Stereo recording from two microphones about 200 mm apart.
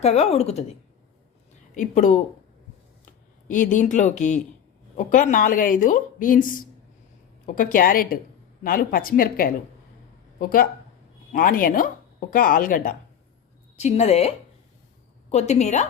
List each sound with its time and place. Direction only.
0.0 s speech: 35° left (ahead or behind)
1.7 s speech: 40° left (ahead or behind)
3.5 s a woman's voice: 40° left (ahead or behind)
13.7 s speech: 35° left (ahead or behind)